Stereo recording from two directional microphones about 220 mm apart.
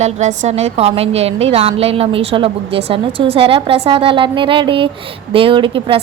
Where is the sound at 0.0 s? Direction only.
30° right (ahead or behind).